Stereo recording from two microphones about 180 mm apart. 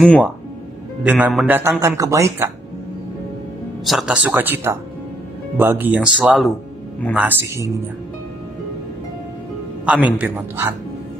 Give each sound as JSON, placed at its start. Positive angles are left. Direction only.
{"t": 1.0, "sound": "speech", "side_deg": -5}
{"t": 3.8, "sound": "speech", "side_deg": 0}
{"t": 9.8, "sound": "speech", "side_deg": -10}